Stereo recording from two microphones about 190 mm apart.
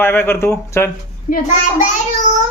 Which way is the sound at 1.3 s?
40° left (ahead or behind).